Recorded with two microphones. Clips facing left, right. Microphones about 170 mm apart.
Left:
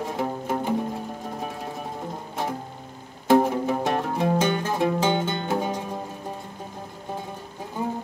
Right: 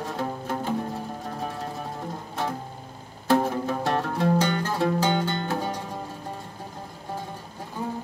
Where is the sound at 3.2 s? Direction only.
15° left (ahead or behind).